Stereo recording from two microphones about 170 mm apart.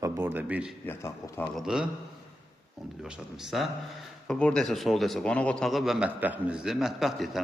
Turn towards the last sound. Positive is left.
turn(degrees=0)  # may be behind; listen again after turning